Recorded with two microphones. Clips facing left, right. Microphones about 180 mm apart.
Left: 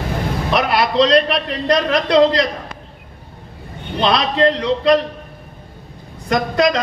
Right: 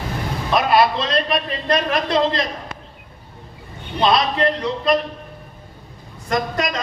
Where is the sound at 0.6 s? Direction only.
75° left (ahead or behind).